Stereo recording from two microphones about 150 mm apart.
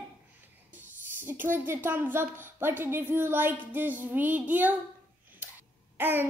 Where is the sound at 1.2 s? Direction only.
15° right (ahead or behind).